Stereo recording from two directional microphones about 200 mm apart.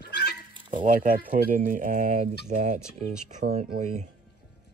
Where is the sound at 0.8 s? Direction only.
40° right (ahead or behind).